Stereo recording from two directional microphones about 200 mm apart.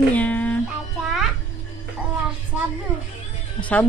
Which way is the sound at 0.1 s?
5° left (ahead or behind).